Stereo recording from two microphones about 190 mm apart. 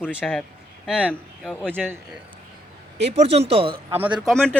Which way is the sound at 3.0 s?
35° right (ahead or behind).